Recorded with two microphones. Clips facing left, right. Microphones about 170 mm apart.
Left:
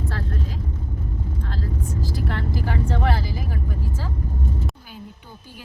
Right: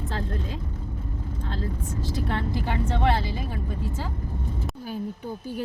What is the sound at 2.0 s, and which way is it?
Vehicle, 25° right (ahead or behind).